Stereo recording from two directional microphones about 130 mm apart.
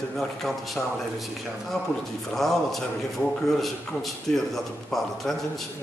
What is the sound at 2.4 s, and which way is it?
A man's voice, centre (ahead or behind).